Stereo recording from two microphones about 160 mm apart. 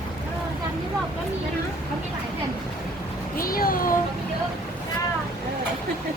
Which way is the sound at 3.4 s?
65° left (ahead or behind).